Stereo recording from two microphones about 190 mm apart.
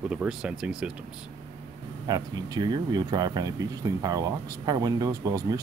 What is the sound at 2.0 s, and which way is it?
Speech, 20° right (ahead or behind).